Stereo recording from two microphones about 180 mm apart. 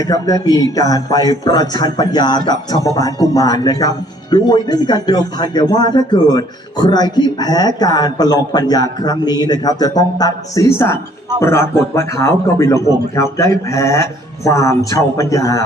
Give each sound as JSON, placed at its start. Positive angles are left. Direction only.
{"t": 0.0, "sound": "a man's voice", "side_deg": 20}